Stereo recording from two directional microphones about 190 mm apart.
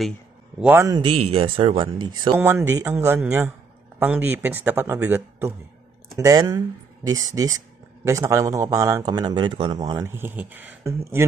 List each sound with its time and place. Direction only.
0.6 s speech: 10° right (ahead or behind)
0.8 s speech: 25° right (ahead or behind)
2.3 s speech: 10° right (ahead or behind)